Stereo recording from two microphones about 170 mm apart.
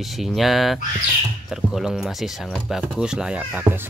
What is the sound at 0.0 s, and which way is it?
Speech, centre (ahead or behind).